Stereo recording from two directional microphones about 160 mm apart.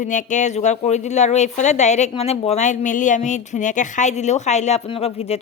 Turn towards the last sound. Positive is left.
turn(degrees=40)  # may be behind; listen again after turning